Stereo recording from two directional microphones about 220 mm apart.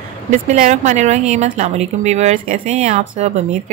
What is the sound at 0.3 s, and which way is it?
A woman's voice, 35° right (ahead or behind).